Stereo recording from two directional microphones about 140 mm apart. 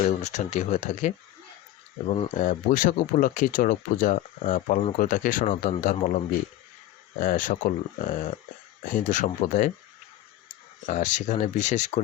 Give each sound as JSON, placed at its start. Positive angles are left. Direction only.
{"t": 0.0, "sound": "speech", "side_deg": 55}
{"t": 2.0, "sound": "speech", "side_deg": 40}
{"t": 2.3, "sound": "speech", "side_deg": 65}
{"t": 5.8, "sound": "speech", "side_deg": 60}
{"t": 7.2, "sound": "speech", "side_deg": 70}
{"t": 10.8, "sound": "speech", "side_deg": 65}